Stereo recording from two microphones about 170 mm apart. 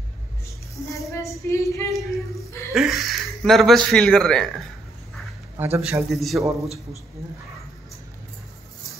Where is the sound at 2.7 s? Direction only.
Centre (ahead or behind).